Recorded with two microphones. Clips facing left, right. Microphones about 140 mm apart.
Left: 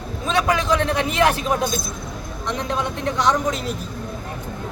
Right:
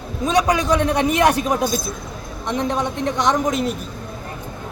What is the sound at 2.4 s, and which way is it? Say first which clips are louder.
Speech: right 3 dB; 20° right (ahead or behind).